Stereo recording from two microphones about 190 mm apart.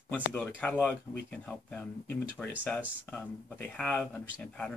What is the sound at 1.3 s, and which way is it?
Speech, 5° left (ahead or behind).